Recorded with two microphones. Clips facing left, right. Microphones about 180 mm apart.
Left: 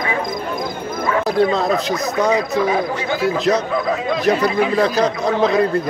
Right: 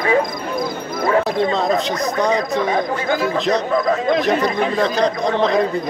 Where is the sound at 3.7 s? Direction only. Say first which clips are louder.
Right 3 dB; 45° right (ahead or behind).